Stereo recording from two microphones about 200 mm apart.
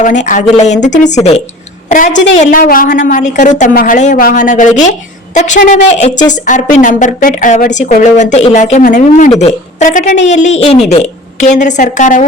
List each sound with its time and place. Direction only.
0.0 s a woman's voice: 40° left (ahead or behind)